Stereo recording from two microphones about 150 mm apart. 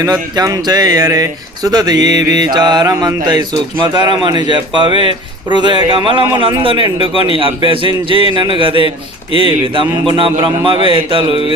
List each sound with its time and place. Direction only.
0.0 s speech: 25° right (ahead or behind)